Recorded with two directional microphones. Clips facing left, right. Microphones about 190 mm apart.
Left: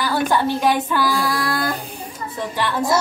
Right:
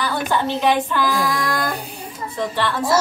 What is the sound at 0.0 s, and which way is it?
Speech, 10° left (ahead or behind).